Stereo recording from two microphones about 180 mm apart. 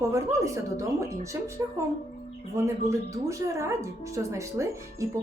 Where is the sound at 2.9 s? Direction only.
15° right (ahead or behind).